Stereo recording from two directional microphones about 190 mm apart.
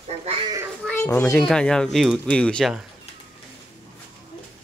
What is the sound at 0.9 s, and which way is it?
A child's voice, 10° left (ahead or behind).